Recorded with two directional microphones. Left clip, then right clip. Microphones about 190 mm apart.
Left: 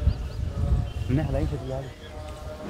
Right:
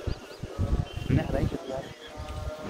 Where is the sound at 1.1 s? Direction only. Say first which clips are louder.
Left 1 dB; 15° left (ahead or behind).